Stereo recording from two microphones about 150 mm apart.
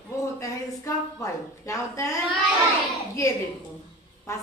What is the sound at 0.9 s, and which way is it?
Speech, 20° left (ahead or behind).